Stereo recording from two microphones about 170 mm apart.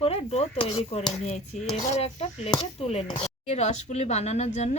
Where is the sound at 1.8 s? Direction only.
40° left (ahead or behind).